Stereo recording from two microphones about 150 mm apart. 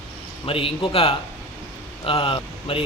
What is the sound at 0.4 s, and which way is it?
A man's voice, 35° left (ahead or behind).